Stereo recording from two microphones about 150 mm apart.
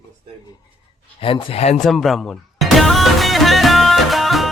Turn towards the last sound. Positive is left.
turn(degrees=0)  # may be behind; listen again after turning